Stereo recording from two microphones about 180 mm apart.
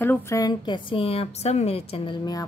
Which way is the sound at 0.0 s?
15° left (ahead or behind).